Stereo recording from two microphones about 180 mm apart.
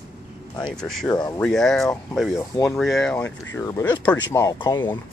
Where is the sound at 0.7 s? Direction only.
5° left (ahead or behind).